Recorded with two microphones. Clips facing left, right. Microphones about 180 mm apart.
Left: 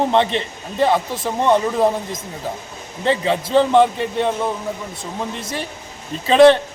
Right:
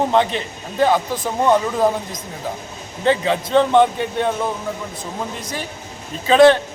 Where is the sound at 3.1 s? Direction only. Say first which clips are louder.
Right 1 dB; centre (ahead or behind).